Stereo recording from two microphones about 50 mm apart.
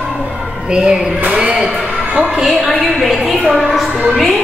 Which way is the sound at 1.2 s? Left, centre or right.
Centre.